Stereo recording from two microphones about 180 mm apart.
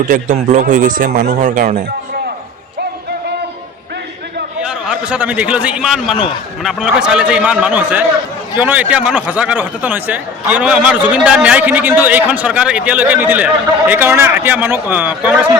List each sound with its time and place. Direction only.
0.1 s speech: 45° right (ahead or behind)
1.4 s speech: 45° right (ahead or behind)
4.6 s a man's voice: 5° right (ahead or behind)